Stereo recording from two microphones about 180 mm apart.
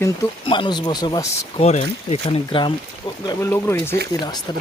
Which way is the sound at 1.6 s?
35° left (ahead or behind).